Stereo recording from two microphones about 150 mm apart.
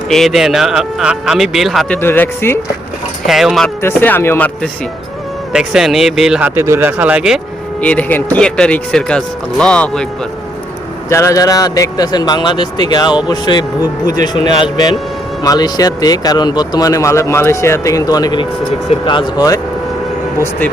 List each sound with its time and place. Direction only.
0.1 s speech: centre (ahead or behind)
2.0 s speech: 15° left (ahead or behind)
3.2 s speech: centre (ahead or behind)
3.8 s speech: 15° left (ahead or behind)
5.5 s speech: 5° right (ahead or behind)
7.8 s speech: 10° left (ahead or behind)
11.1 s speech: 20° left (ahead or behind)